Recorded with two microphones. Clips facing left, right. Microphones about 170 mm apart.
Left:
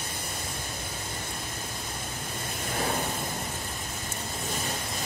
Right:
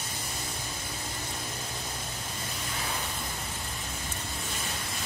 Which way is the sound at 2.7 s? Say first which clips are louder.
Left 8 dB; 55° left (ahead or behind).